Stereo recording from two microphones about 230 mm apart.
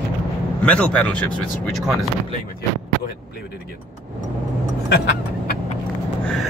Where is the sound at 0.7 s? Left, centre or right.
Centre.